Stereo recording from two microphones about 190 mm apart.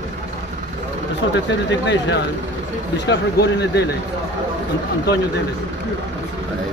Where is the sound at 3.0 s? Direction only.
65° left (ahead or behind).